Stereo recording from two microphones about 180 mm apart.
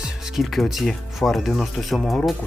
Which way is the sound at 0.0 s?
Centre (ahead or behind).